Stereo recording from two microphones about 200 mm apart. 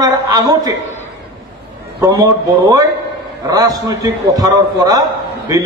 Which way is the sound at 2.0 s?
15° right (ahead or behind).